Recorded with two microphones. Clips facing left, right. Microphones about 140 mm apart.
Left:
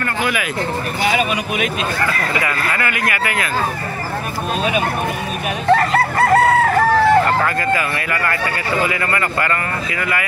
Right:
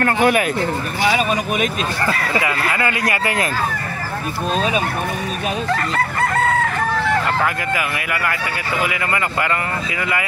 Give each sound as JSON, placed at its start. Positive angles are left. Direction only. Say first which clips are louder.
{"t": 0.0, "sound": "speech", "louder": "right 5 dB", "side_deg": -50}
{"t": 2.4, "sound": "speech", "louder": "right 1 dB", "side_deg": -25}
{"t": 5.7, "sound": "chicken", "louder": "left 11 dB", "side_deg": 35}
{"t": 7.7, "sound": "speech", "louder": "left 2 dB", "side_deg": -10}